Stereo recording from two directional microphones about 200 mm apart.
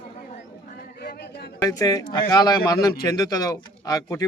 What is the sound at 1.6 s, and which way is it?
Speech, 15° left (ahead or behind).